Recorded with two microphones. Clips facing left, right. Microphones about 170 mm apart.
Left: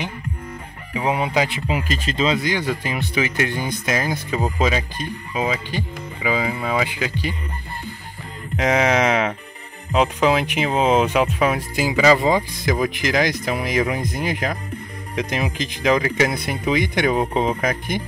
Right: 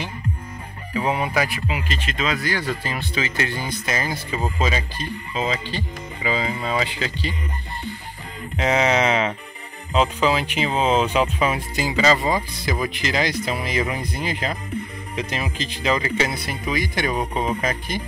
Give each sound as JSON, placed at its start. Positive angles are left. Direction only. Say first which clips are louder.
{"t": 0.9, "sound": "speech", "louder": "left 2 dB", "side_deg": 15}
{"t": 1.7, "sound": "speech", "louder": "left 4 dB", "side_deg": 40}
{"t": 3.8, "sound": "speech", "louder": "left 4 dB", "side_deg": 5}
{"t": 8.5, "sound": "speech", "louder": "left 1 dB", "side_deg": 10}